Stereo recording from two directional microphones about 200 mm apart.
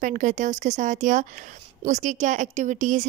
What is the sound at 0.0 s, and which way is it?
Speech, 40° right (ahead or behind).